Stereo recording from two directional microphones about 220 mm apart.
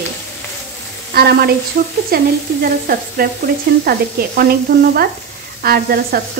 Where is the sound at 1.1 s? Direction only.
45° right (ahead or behind).